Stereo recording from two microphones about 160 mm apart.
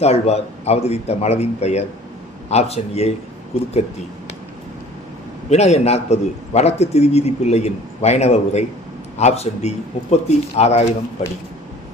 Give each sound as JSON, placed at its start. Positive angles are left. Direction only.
{"t": 0.0, "sound": "a man's voice", "side_deg": 40}
{"t": 5.5, "sound": "a man's voice", "side_deg": 45}